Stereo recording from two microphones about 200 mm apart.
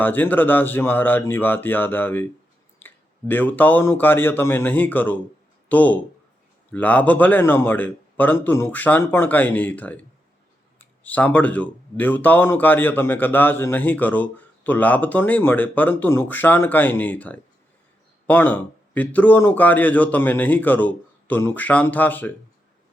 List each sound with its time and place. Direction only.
0.0 s speech: 10° left (ahead or behind)